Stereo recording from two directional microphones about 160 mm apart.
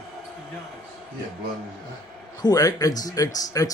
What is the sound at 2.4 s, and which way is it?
Speech, 25° left (ahead or behind).